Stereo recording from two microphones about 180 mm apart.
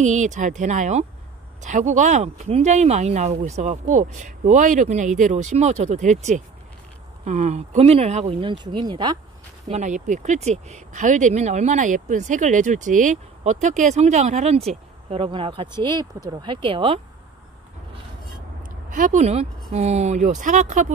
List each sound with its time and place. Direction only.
0.0 s speech: 40° right (ahead or behind); by 9.2 s 25° right (ahead or behind)
9.7 s speech: 40° right (ahead or behind)
18.9 s speech: 45° right (ahead or behind)